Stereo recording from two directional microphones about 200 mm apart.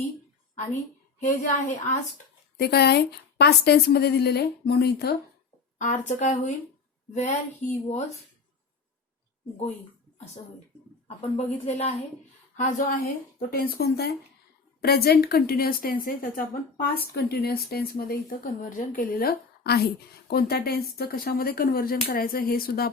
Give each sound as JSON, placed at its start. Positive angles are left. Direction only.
{"t": 1.2, "sound": "speech", "side_deg": 40}
{"t": 2.6, "sound": "a woman's voice", "side_deg": 55}
{"t": 5.8, "sound": "speech", "side_deg": 40}
{"t": 11.2, "sound": "a woman's voice", "side_deg": 30}